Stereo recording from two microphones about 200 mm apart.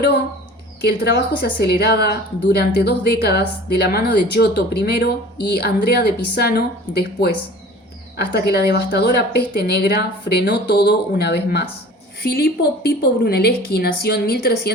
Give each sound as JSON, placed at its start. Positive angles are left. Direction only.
{"t": 0.9, "sound": "a woman's voice", "side_deg": 55}